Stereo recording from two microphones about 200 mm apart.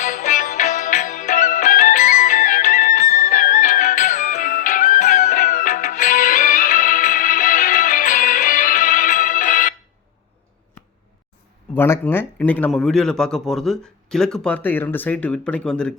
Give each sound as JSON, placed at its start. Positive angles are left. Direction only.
{"t": 0.0, "sound": "music", "side_deg": 40}
{"t": 11.7, "sound": "a man's voice", "side_deg": 10}